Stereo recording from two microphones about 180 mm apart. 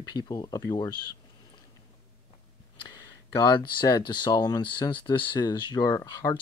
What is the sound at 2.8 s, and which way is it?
Speech, 20° left (ahead or behind).